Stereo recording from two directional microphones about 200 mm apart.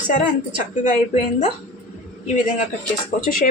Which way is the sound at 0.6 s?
35° left (ahead or behind).